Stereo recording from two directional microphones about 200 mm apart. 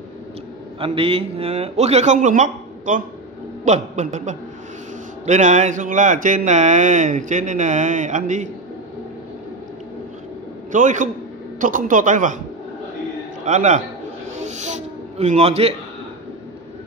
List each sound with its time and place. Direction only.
0.7 s speech: 25° right (ahead or behind)
10.7 s speech: 40° right (ahead or behind)
13.5 s speech: 35° right (ahead or behind)
14.4 s a sound: 35° right (ahead or behind)